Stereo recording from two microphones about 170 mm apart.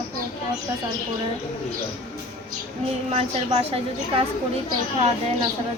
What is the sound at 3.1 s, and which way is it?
Speech, 40° right (ahead or behind).